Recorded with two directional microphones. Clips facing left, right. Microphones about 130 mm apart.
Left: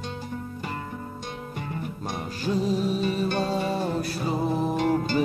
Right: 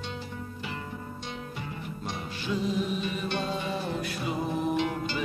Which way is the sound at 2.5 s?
40° left (ahead or behind).